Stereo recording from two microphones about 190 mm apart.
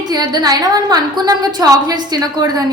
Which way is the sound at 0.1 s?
20° right (ahead or behind).